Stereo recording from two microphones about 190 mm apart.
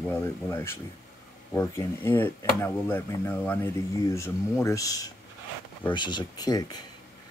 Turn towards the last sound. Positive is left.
turn(degrees=20)  # may be behind; listen again after turning